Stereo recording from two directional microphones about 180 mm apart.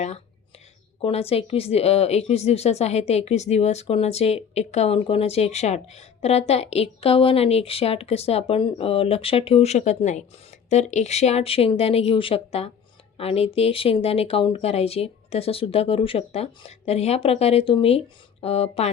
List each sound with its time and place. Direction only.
1.0 s speech: 35° left (ahead or behind)